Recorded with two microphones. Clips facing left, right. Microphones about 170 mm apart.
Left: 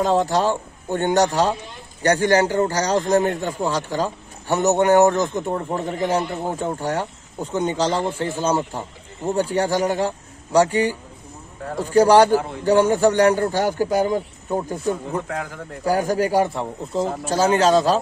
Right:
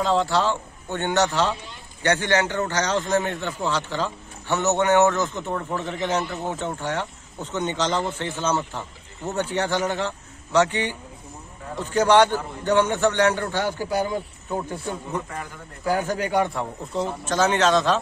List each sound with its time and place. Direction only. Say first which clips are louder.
0.0 s speech: left 3 dB; 45° left (ahead or behind)
15.2 s a man's voice: left 6 dB; 80° left
15.8 s speech: left 4 dB; 40° left (ahead or behind)
16.4 s a man's voice: left 2 dB; centre (ahead or behind)
17.3 s speech: left 2 dB; 35° left (ahead or behind)